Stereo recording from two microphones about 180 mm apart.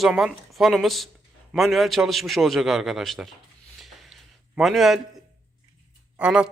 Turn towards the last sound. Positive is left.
turn(degrees=-5)  # may be behind; listen again after turning